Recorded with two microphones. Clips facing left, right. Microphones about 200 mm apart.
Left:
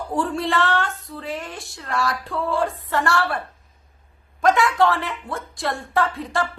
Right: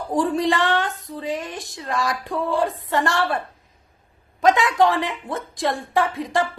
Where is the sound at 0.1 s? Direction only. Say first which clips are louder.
Right 3 dB; 15° right (ahead or behind).